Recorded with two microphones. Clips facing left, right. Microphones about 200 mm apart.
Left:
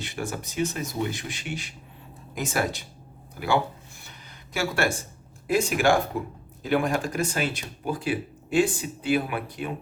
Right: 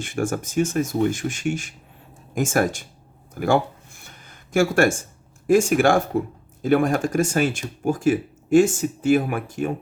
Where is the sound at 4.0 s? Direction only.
50° right (ahead or behind).